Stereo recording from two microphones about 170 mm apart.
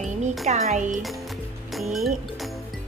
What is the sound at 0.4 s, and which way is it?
Speech, 40° right (ahead or behind).